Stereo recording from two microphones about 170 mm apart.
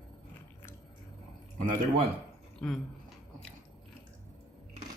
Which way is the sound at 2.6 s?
5° left (ahead or behind).